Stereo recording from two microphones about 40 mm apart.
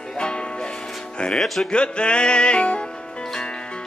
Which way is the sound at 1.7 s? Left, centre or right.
Left.